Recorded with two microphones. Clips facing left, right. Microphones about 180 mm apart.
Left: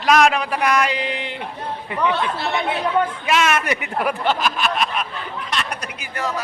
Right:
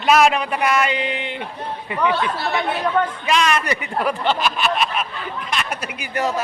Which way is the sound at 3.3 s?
5° left (ahead or behind).